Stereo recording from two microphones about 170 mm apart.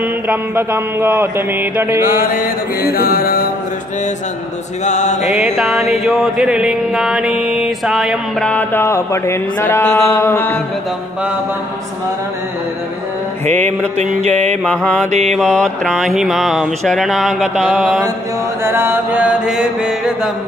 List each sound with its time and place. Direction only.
0.3 s mantra: 10° right (ahead or behind)
2.0 s mantra: 55° left (ahead or behind)
4.8 s music: 45° left (ahead or behind)
5.6 s music: centre (ahead or behind)
13.5 s mantra: 45° right (ahead or behind)
14.6 s music: 5° left (ahead or behind)
15.0 s mantra: 40° right (ahead or behind)
15.3 s music: centre (ahead or behind)
18.6 s mantra: 15° right (ahead or behind)